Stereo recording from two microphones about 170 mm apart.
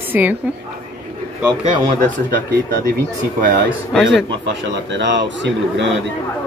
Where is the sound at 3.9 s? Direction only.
Centre (ahead or behind).